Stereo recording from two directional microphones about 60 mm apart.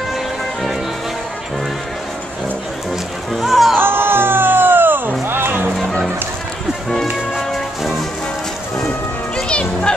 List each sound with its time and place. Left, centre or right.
3.3 s music: centre
3.8 s music: right
9.5 s music: centre